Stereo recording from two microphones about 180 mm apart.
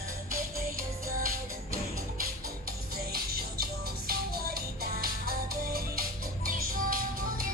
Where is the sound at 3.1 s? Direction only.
55° right (ahead or behind).